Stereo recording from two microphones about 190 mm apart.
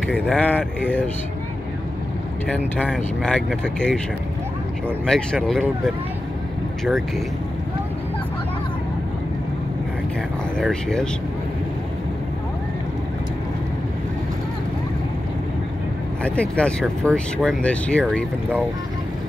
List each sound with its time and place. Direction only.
0.1 s speech: 5° left (ahead or behind)
2.4 s speech: 5° left (ahead or behind)
5.0 s speech: 5° left (ahead or behind)
10.6 s speech: 5° left (ahead or behind)
16.3 s speech: 5° left (ahead or behind)